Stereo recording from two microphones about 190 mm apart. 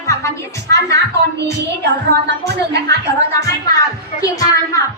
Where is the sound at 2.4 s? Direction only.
60° right (ahead or behind).